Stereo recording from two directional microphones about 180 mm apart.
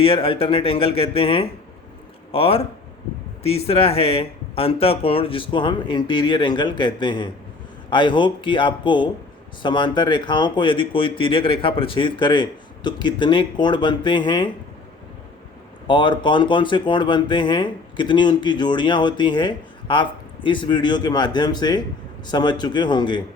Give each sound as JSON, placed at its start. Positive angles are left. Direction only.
{"t": 0.0, "sound": "speech", "side_deg": 30}
{"t": 15.9, "sound": "speech", "side_deg": 25}